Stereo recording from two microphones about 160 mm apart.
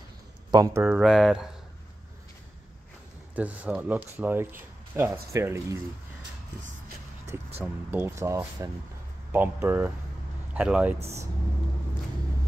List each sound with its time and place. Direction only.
0.5 s speech: 25° right (ahead or behind)
0.8 s speech: 5° right (ahead or behind)
3.3 s speech: 10° right (ahead or behind)
7.6 s speech: 10° right (ahead or behind)